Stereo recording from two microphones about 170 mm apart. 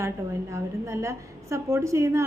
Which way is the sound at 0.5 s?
15° right (ahead or behind).